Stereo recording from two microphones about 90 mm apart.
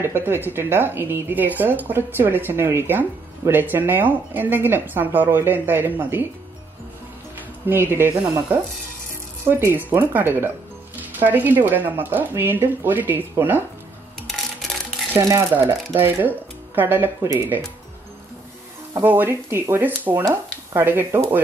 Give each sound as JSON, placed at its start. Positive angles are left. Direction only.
{"t": 0.0, "sound": "speech", "side_deg": -25}
{"t": 7.3, "sound": "speech", "side_deg": -25}
{"t": 14.2, "sound": "a sound", "side_deg": 0}
{"t": 15.1, "sound": "speech", "side_deg": -40}
{"t": 15.5, "sound": "speech", "side_deg": -25}
{"t": 19.0, "sound": "speech", "side_deg": -25}